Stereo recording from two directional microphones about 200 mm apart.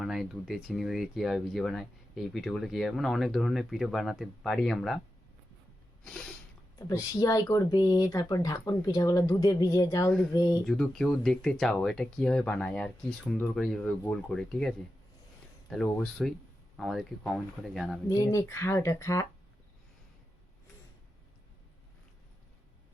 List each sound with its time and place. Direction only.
0.0 s speech: centre (ahead or behind)
6.7 s speech: 15° left (ahead or behind)
10.7 s speech: centre (ahead or behind)
18.1 s speech: 15° left (ahead or behind)